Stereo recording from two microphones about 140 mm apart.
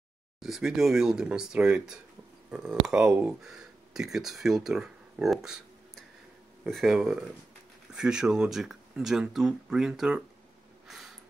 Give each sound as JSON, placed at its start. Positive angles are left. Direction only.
{"t": 0.4, "sound": "speech", "side_deg": -5}